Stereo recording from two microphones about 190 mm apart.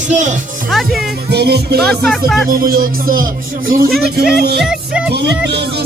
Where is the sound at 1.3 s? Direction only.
60° right (ahead or behind).